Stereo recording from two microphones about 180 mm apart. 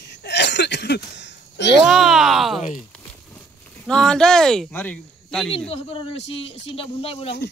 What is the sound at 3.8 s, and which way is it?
Speech, 5° left (ahead or behind).